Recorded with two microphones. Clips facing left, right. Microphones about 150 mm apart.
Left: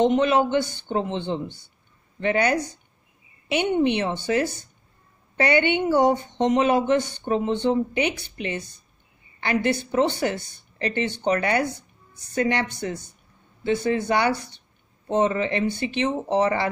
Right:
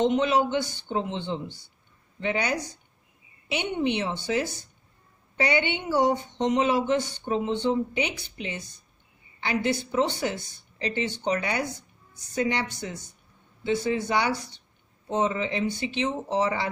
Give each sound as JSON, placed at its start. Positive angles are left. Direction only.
{"t": 0.0, "sound": "a man's voice", "side_deg": 55}